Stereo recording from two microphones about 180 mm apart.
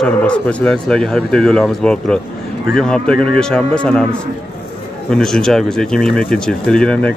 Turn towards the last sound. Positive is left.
turn(degrees=5)  # may be behind; listen again after turning